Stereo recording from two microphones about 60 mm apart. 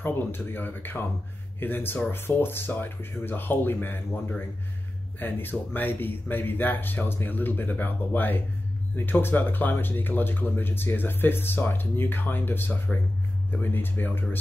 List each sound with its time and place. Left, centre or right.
0.0 s speech: left
5.2 s speech: left